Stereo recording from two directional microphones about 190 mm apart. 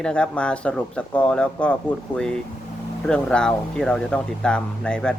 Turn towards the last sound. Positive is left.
turn(degrees=5)  # may be behind; listen again after turning